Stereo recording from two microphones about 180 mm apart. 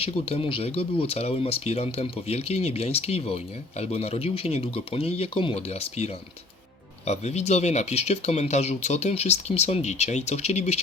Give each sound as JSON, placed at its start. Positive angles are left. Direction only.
{"t": 0.0, "sound": "speech", "side_deg": 35}
{"t": 7.1, "sound": "speech", "side_deg": 35}